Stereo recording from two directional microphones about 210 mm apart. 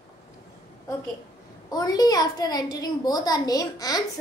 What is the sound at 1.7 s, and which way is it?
A woman's voice, 20° left (ahead or behind).